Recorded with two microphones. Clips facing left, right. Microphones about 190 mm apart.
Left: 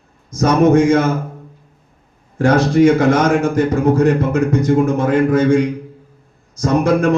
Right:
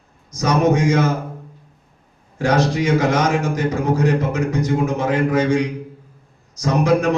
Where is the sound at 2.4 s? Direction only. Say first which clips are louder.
Left 6 dB; 55° left (ahead or behind).